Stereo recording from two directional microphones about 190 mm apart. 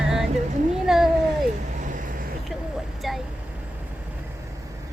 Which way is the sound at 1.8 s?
45° right (ahead or behind).